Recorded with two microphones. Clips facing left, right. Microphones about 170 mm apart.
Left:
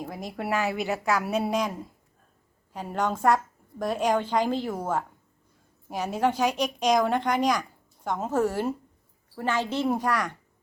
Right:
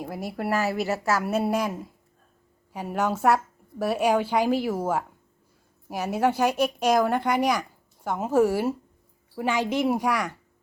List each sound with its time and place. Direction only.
0.0 s a woman's voice: 5° right (ahead or behind)